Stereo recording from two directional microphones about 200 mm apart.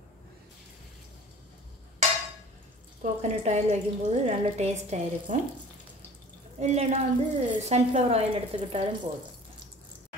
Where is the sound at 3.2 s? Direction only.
35° right (ahead or behind).